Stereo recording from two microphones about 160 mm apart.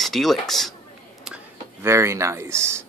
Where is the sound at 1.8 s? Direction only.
15° right (ahead or behind).